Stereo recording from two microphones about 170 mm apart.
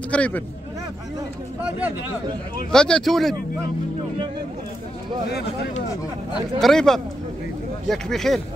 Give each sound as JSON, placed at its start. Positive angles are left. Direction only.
{"t": 0.1, "sound": "speech", "side_deg": 10}
{"t": 2.7, "sound": "speech", "side_deg": 5}
{"t": 6.3, "sound": "speech", "side_deg": 0}